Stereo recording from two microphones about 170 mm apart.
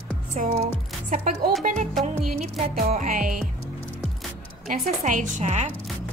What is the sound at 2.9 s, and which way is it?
Speech, 50° right (ahead or behind).